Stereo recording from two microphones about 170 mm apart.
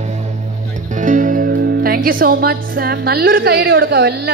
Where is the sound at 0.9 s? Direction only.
50° right (ahead or behind).